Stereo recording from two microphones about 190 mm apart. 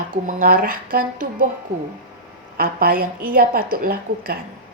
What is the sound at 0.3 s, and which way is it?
A woman's voice, 45° right (ahead or behind).